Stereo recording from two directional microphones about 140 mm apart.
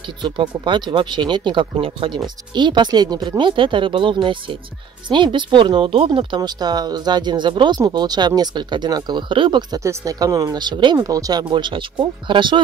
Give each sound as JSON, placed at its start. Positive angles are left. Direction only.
{"t": 0.2, "sound": "speech", "side_deg": -35}